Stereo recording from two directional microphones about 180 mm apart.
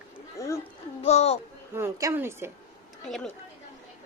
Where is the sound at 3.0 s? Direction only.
Centre (ahead or behind).